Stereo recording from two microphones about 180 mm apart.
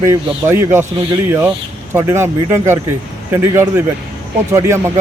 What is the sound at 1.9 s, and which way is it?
Speech, 15° right (ahead or behind).